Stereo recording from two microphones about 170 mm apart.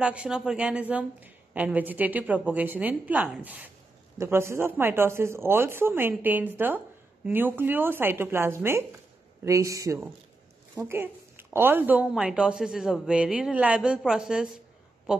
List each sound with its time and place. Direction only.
0.0 s a woman's voice: 5° right (ahead or behind)